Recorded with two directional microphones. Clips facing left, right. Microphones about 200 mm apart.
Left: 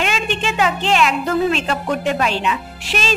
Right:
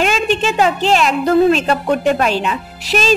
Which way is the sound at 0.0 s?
40° right (ahead or behind).